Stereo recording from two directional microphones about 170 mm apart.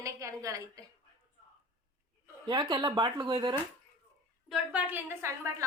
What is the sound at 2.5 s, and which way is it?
Speech, 25° right (ahead or behind).